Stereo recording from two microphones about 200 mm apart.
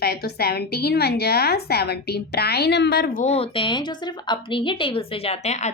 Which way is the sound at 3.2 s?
30° left (ahead or behind).